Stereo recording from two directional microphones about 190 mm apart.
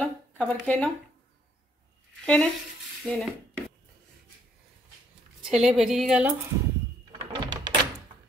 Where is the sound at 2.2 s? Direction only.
5° left (ahead or behind).